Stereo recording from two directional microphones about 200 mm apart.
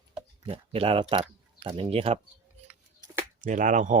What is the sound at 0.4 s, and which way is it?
Speech, 30° right (ahead or behind).